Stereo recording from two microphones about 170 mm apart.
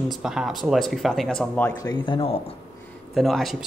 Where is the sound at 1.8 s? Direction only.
25° left (ahead or behind).